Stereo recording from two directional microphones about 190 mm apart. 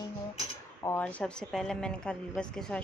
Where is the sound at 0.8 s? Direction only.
10° left (ahead or behind).